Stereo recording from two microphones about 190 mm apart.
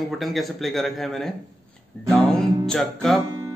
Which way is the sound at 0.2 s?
Centre (ahead or behind).